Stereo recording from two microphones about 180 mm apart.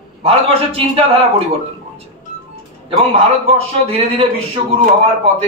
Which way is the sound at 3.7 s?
30° right (ahead or behind).